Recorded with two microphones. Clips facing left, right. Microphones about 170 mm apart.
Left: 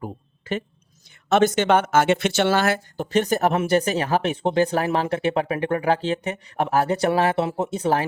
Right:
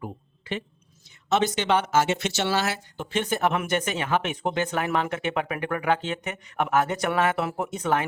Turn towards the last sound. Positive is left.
turn(degrees=30)  # may be behind; listen again after turning